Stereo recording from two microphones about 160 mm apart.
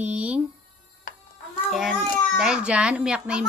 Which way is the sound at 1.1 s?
60° left (ahead or behind).